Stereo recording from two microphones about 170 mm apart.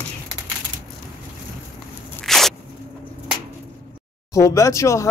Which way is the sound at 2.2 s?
Centre (ahead or behind).